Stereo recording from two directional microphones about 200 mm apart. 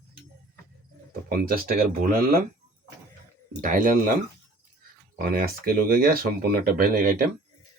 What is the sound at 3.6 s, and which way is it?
Speech, 40° right (ahead or behind).